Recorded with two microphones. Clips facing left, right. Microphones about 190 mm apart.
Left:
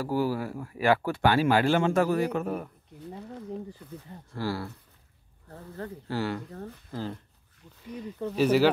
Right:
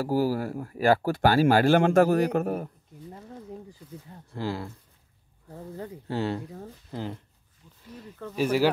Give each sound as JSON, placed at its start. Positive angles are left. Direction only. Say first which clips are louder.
{"t": 0.0, "sound": "speech", "louder": "right 2 dB", "side_deg": -40}
{"t": 3.8, "sound": "speech", "louder": "left 1 dB", "side_deg": 60}
{"t": 4.3, "sound": "speech", "louder": "even", "side_deg": -20}
{"t": 6.0, "sound": "speech", "louder": "right 2 dB", "side_deg": -25}
{"t": 8.4, "sound": "speech", "louder": "left 2 dB", "side_deg": -10}